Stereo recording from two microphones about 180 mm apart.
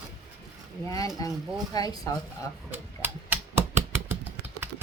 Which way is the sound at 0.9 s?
20° left (ahead or behind).